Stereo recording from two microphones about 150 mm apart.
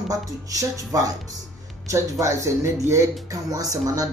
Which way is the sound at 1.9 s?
20° right (ahead or behind).